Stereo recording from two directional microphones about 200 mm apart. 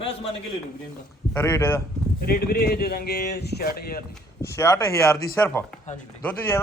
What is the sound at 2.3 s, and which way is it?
Speech, 50° left (ahead or behind).